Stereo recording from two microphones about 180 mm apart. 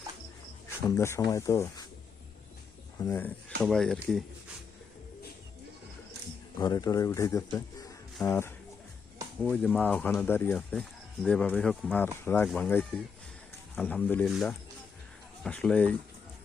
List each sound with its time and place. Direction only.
0.9 s speech: 15° left (ahead or behind)
3.0 s speech: 10° left (ahead or behind)
6.6 s speech: 20° left (ahead or behind)
15.4 s speech: 5° left (ahead or behind)